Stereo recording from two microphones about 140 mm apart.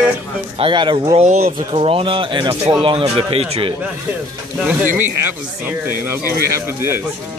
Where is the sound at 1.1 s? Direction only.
60° right (ahead or behind).